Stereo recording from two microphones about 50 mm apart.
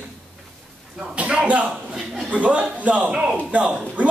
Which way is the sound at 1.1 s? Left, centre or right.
Right.